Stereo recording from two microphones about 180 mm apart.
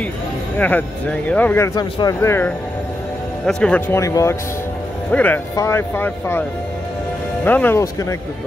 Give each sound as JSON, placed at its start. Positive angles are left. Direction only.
{"t": 0.6, "sound": "speech", "side_deg": 10}
{"t": 1.8, "sound": "speech", "side_deg": 20}
{"t": 7.4, "sound": "speech", "side_deg": 10}